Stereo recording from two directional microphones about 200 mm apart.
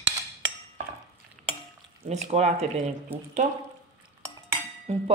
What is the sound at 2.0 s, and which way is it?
Speech, 35° right (ahead or behind).